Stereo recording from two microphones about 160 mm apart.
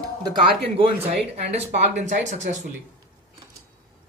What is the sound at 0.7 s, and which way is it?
Speech, 40° right (ahead or behind).